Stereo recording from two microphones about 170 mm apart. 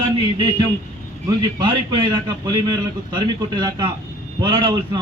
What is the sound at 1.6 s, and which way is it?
A man's voice, 25° right (ahead or behind).